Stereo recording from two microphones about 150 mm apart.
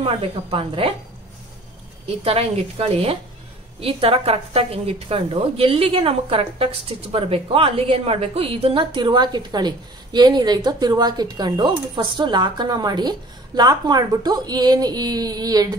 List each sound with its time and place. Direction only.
0.0 s a woman's voice: 40° right (ahead or behind)
2.2 s a woman's voice: 40° right (ahead or behind); by 15.7 s 25° right (ahead or behind)